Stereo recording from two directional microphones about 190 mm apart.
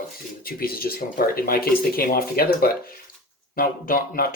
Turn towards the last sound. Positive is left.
turn(degrees=50)  # may be behind; listen again after turning